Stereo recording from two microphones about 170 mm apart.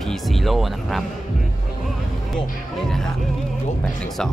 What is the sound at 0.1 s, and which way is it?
Speech, centre (ahead or behind).